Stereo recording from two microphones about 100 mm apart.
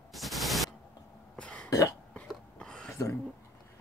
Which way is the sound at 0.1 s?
Centre (ahead or behind).